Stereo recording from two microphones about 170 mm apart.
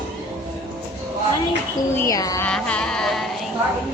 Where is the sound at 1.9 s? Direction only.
15° left (ahead or behind).